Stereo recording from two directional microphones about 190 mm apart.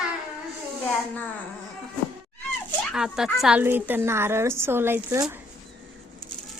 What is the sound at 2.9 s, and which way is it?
A woman's voice, 5° right (ahead or behind).